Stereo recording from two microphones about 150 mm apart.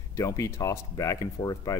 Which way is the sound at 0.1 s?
20° left (ahead or behind).